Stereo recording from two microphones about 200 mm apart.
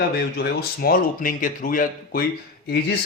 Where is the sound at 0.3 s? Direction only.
50° left (ahead or behind).